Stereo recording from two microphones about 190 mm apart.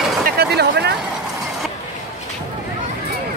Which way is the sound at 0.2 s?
55° right (ahead or behind).